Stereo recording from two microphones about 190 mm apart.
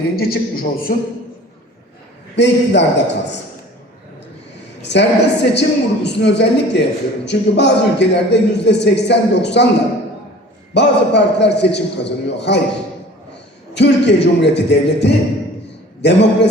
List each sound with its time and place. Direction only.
0.2 s a man's voice: 50° left (ahead or behind)
2.3 s speech: 65° left (ahead or behind)
4.8 s a man's voice: 65° left (ahead or behind)
10.8 s a man's voice: 65° left (ahead or behind)
13.7 s a man's voice: 65° left (ahead or behind)